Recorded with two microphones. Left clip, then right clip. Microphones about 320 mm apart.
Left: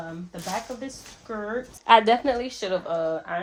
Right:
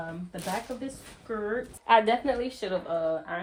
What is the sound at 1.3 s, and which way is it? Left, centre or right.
Speech, centre.